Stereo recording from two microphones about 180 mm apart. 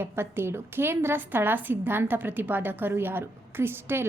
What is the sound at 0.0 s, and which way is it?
A woman's voice, 15° right (ahead or behind).